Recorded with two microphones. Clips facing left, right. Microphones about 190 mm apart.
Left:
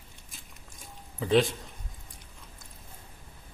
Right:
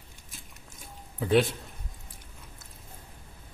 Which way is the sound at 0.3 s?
Centre (ahead or behind).